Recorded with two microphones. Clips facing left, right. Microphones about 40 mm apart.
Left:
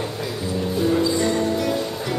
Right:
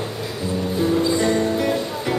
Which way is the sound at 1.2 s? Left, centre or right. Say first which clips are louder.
Right 2 dB; centre.